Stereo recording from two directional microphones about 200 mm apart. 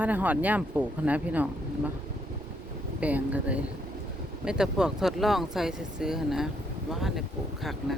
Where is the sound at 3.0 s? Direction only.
5° right (ahead or behind).